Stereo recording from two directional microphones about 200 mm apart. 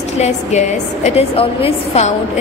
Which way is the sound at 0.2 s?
35° left (ahead or behind).